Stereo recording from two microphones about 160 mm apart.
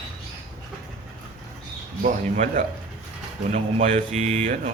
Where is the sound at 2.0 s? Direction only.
50° right (ahead or behind).